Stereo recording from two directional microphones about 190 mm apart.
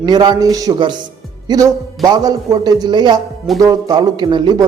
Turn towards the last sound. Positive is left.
turn(degrees=-25)  # may be behind; listen again after turning